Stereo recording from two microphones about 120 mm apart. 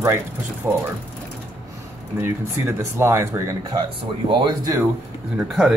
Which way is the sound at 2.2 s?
20° right (ahead or behind).